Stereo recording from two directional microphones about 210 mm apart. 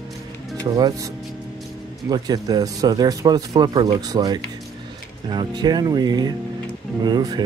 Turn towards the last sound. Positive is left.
turn(degrees=-20)  # may be behind; listen again after turning